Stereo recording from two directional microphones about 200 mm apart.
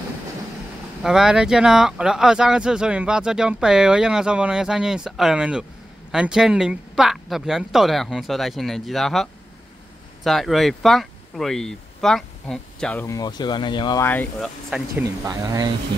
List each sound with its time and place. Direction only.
1.0 s speech: 5° right (ahead or behind); by 14.0 s 20° left (ahead or behind)
14.0 s speech: 10° left (ahead or behind)
14.7 s speech: 15° right (ahead or behind)